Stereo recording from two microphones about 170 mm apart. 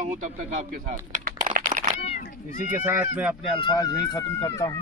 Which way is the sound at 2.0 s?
45° left (ahead or behind).